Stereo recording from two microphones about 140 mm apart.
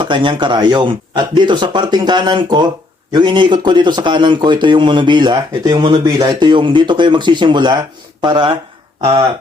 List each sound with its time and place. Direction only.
0.0 s speech: 35° right (ahead or behind)